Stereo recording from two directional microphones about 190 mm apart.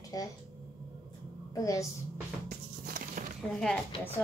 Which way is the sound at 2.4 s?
50° right (ahead or behind).